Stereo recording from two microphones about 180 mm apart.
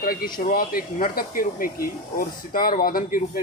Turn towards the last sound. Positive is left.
turn(degrees=50)  # may be behind; listen again after turning